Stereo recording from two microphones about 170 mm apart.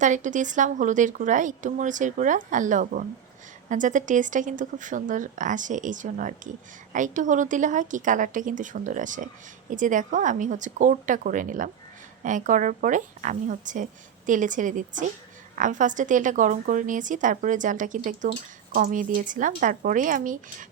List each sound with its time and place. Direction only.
0.0 s a woman's voice: 45° right (ahead or behind)